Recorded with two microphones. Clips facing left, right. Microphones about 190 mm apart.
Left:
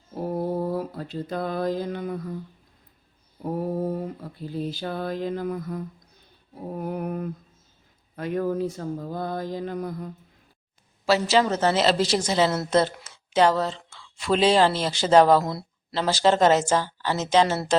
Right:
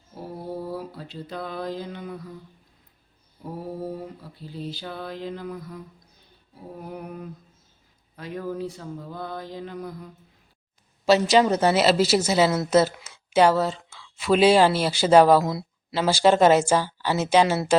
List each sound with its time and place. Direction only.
0.2 s mantra: 50° left (ahead or behind)
3.4 s mantra: 55° left (ahead or behind)
4.2 s a sound: 50° left (ahead or behind)
11.0 s speech: 20° right (ahead or behind)